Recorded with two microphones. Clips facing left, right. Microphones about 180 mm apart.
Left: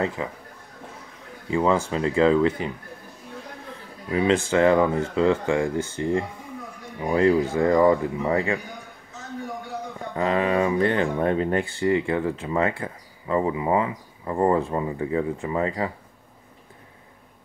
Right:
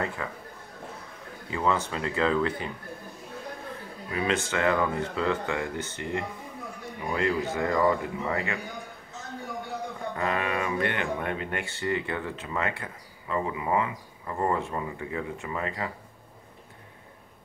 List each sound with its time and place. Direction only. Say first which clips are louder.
0.0 s speech: left 5 dB; 20° left (ahead or behind)
1.5 s speech: left 6 dB; 30° left (ahead or behind)
4.1 s speech: left 7 dB; 30° left (ahead or behind)
10.1 s speech: left 8 dB; 25° left (ahead or behind)